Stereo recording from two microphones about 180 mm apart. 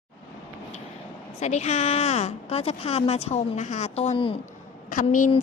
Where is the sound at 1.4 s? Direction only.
40° left (ahead or behind).